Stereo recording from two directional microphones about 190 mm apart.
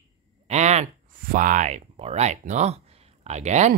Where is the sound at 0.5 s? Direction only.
35° right (ahead or behind).